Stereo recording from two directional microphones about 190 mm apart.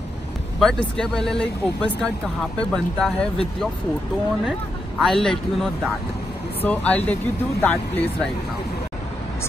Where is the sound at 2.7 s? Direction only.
5° left (ahead or behind).